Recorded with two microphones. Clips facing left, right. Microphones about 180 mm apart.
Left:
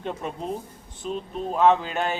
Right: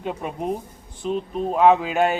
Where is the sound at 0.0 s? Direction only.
10° right (ahead or behind).